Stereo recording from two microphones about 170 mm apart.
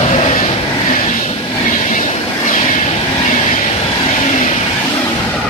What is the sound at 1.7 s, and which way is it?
Vehicle, 45° left (ahead or behind).